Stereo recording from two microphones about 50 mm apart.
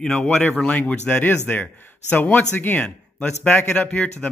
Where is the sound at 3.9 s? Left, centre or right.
Left.